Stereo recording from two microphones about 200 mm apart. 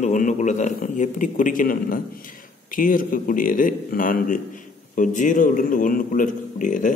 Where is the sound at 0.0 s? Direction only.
40° left (ahead or behind).